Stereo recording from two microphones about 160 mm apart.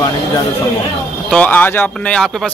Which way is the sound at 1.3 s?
10° left (ahead or behind).